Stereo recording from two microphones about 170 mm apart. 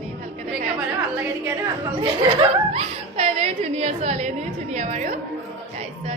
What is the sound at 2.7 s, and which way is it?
A woman's voice, 40° right (ahead or behind).